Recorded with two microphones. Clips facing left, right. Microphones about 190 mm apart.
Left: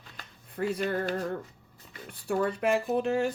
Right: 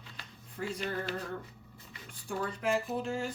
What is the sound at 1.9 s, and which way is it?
Speech, 65° left (ahead or behind).